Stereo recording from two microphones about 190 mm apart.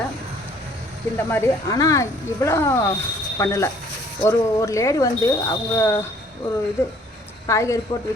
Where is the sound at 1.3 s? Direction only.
10° left (ahead or behind).